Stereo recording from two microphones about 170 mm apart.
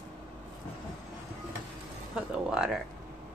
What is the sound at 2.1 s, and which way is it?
Speech, 5° right (ahead or behind).